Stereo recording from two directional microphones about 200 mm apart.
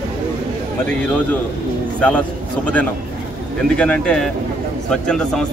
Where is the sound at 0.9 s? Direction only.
10° left (ahead or behind).